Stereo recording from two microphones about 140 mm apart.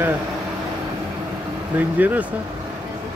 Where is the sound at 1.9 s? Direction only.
10° right (ahead or behind).